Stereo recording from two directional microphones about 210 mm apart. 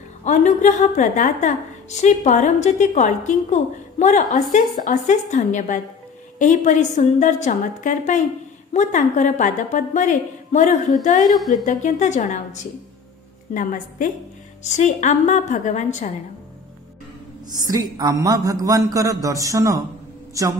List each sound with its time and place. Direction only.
0.2 s a woman's voice: 35° left (ahead or behind)
17.5 s a man's voice: 15° right (ahead or behind)